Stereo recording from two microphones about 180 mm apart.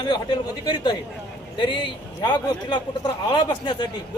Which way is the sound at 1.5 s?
25° left (ahead or behind).